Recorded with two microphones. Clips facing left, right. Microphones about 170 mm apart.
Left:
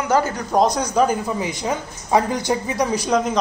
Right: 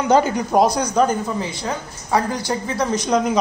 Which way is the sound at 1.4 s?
15° left (ahead or behind).